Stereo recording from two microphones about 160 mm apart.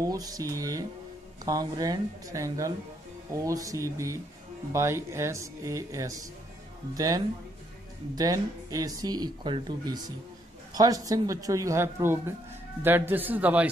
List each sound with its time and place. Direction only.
0.0 s speech: 20° right (ahead or behind)